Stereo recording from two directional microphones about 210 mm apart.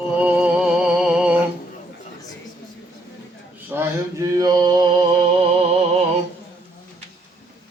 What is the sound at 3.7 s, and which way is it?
Mantra, 15° right (ahead or behind).